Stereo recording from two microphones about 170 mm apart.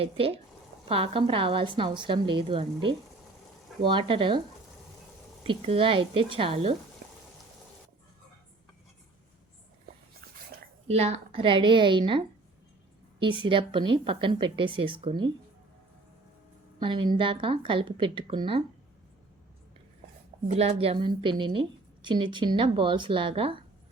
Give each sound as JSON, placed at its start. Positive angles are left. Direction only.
{"t": 0.0, "sound": "a woman's voice", "side_deg": -35}
{"t": 5.4, "sound": "speech", "side_deg": -35}
{"t": 10.8, "sound": "a woman's voice", "side_deg": -40}
{"t": 16.8, "sound": "a woman's voice", "side_deg": -30}
{"t": 20.5, "sound": "a woman's voice", "side_deg": -35}